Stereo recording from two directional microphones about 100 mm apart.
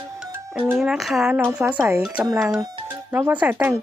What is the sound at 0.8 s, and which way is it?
Speech, centre (ahead or behind).